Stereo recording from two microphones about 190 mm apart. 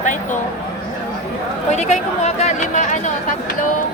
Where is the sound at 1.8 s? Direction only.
35° left (ahead or behind).